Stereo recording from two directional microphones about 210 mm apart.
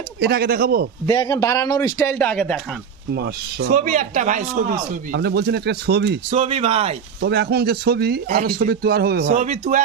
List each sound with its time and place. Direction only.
0.2 s speech: 50° right (ahead or behind)
1.0 s a man's voice: 20° left (ahead or behind)
3.1 s speech: 50° right (ahead or behind)
3.8 s a man's voice: 35° right (ahead or behind)
5.1 s speech: 50° right (ahead or behind)
6.3 s speech: 30° right (ahead or behind)
7.2 s speech: 50° right (ahead or behind)
9.2 s a man's voice: 35° right (ahead or behind)